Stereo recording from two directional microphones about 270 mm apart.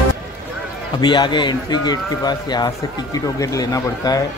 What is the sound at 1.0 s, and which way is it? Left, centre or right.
Speech, centre.